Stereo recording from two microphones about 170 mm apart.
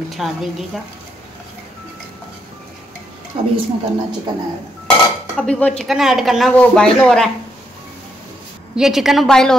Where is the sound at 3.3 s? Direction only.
35° right (ahead or behind).